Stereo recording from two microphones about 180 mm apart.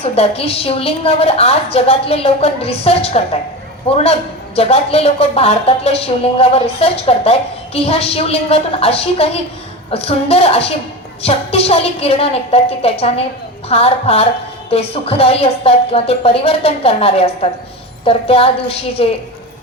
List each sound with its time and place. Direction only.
0.0 s a woman's voice: 35° left (ahead or behind)